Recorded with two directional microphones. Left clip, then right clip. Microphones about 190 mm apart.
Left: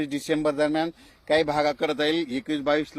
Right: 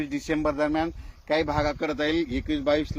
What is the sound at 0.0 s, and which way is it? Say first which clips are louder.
Speech: left 2 dB; 30° left (ahead or behind).